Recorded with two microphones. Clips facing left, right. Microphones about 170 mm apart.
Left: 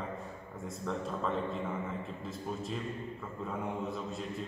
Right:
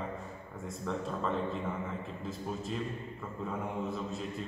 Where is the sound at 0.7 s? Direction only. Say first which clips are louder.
Even; centre (ahead or behind).